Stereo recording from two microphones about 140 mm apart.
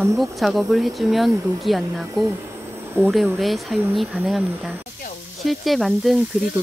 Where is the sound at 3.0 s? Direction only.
15° right (ahead or behind).